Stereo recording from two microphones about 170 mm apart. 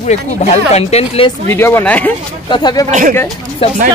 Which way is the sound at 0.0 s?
40° left (ahead or behind).